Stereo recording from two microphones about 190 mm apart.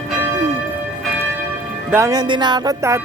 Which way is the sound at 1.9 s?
15° right (ahead or behind).